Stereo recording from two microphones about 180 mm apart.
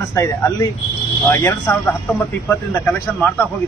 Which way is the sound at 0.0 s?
15° left (ahead or behind).